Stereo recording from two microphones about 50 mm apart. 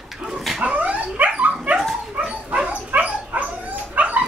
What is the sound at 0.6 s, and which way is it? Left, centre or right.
Dog, right.